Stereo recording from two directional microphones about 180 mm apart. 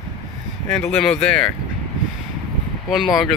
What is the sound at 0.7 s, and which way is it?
Speech, 5° left (ahead or behind).